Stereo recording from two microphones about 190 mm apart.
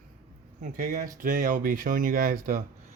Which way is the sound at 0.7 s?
45° right (ahead or behind).